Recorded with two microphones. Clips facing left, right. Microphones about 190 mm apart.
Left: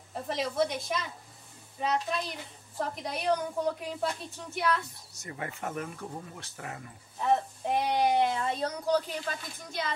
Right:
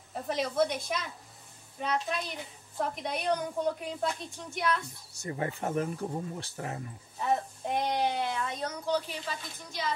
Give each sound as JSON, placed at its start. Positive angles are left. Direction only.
{"t": 0.1, "sound": "a woman's voice", "side_deg": 0}
{"t": 5.1, "sound": "speech", "side_deg": -30}
{"t": 7.2, "sound": "a woman's voice", "side_deg": 0}
{"t": 8.2, "sound": "a woman's voice", "side_deg": 25}